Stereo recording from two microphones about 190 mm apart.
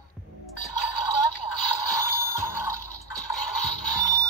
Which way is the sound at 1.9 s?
15° right (ahead or behind).